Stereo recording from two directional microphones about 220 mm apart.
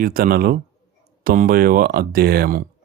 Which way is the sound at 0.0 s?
40° right (ahead or behind).